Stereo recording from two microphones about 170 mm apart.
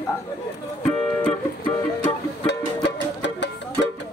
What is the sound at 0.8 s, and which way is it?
Music, 5° left (ahead or behind).